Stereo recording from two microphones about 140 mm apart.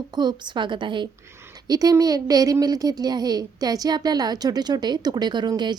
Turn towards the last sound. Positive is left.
turn(degrees=-30)  # may be behind; listen again after turning